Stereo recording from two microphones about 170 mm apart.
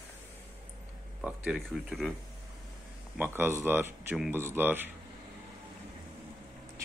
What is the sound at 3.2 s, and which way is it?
Speech, 15° right (ahead or behind).